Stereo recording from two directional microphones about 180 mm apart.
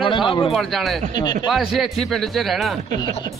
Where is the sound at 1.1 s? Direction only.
25° left (ahead or behind).